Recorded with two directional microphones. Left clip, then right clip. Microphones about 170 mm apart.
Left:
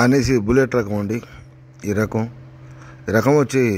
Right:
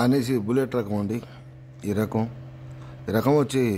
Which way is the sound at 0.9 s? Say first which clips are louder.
Left 5 dB; 10° left (ahead or behind).